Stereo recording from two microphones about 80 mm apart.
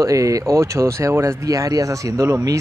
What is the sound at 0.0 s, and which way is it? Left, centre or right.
Speech, right.